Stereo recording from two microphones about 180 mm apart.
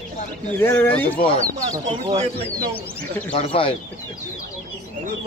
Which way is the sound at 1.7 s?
20° right (ahead or behind).